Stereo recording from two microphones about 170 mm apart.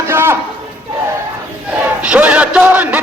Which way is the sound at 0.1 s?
15° right (ahead or behind).